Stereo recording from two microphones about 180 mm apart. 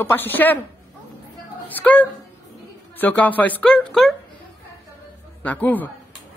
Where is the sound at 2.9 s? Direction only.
10° left (ahead or behind).